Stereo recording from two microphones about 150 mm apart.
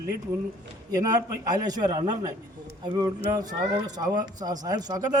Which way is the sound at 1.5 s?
25° right (ahead or behind).